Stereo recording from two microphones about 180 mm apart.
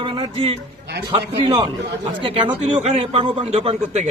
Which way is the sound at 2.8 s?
35° right (ahead or behind).